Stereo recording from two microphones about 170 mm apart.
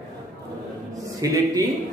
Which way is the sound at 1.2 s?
20° right (ahead or behind).